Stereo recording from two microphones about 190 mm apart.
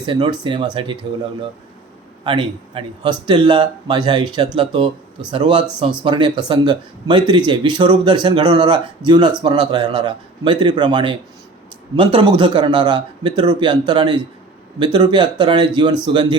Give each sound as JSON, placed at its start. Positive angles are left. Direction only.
{"t": 0.0, "sound": "speech", "side_deg": -25}
{"t": 2.2, "sound": "speech", "side_deg": -25}